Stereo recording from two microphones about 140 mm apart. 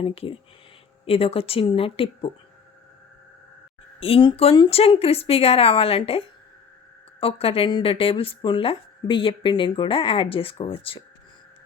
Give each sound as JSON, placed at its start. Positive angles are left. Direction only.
{"t": 0.0, "sound": "a woman's voice", "side_deg": 40}
{"t": 4.0, "sound": "a woman's voice", "side_deg": 40}